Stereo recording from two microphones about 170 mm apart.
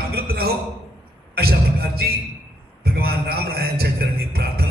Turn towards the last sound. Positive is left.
turn(degrees=-65)  # may be behind; listen again after turning